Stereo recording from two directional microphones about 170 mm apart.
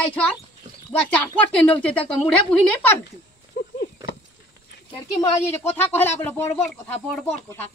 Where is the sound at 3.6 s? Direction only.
75° left (ahead or behind).